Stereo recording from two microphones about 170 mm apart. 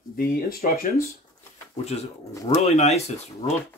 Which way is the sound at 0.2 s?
60° left (ahead or behind).